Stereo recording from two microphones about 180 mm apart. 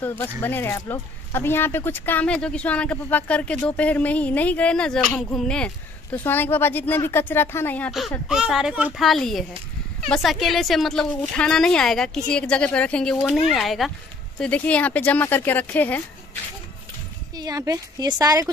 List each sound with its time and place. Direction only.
0.0 s speech: 10° left (ahead or behind)
8.3 s a woman's voice: 5° right (ahead or behind)
17.4 s speech: 20° right (ahead or behind)